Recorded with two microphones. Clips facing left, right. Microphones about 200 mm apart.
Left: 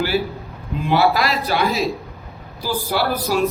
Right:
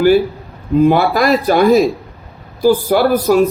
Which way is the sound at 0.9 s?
50° right (ahead or behind).